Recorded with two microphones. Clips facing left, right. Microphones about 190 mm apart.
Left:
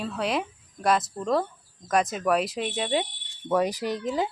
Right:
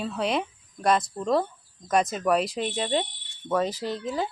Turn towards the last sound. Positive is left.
turn(degrees=15)  # may be behind; listen again after turning